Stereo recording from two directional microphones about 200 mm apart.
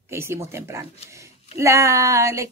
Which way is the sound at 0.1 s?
15° right (ahead or behind).